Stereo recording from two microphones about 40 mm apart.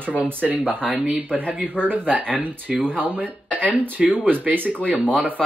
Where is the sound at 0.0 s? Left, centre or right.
Right.